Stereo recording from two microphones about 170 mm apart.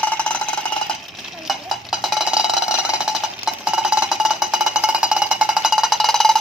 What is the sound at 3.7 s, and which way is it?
Cowbell, 5° right (ahead or behind).